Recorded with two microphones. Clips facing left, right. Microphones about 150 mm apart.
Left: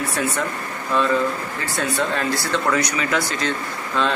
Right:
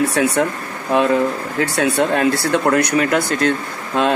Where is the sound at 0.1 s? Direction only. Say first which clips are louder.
Right 7 dB; 75° right (ahead or behind).